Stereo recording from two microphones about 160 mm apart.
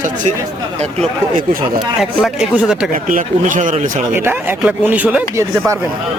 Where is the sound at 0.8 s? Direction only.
45° right (ahead or behind).